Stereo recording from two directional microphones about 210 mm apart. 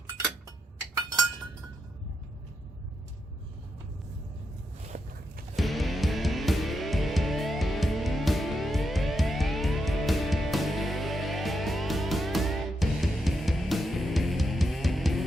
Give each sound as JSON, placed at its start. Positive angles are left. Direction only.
{"t": 4.9, "sound": "walk", "side_deg": -45}
{"t": 5.5, "sound": "music", "side_deg": 0}